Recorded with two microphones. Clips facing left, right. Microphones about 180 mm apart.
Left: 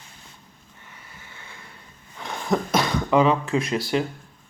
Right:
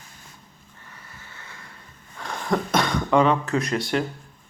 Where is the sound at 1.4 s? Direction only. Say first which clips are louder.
Even; 25° left (ahead or behind).